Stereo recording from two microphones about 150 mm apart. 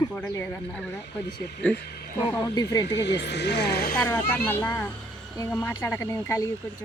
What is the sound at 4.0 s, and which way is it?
Speech, 10° left (ahead or behind).